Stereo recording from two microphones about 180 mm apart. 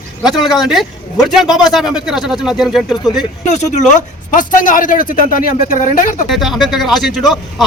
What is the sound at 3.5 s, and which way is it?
Speech, 40° left (ahead or behind).